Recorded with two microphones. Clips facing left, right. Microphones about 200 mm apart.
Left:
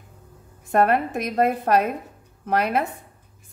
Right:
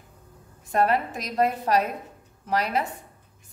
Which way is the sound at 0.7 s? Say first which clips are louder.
Left 3 dB; 55° left (ahead or behind).